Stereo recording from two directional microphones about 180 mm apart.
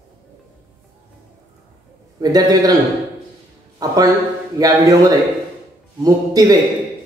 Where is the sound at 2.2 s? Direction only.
20° right (ahead or behind).